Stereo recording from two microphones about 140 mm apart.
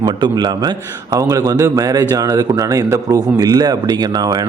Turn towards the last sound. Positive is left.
turn(degrees=-30)  # may be behind; listen again after turning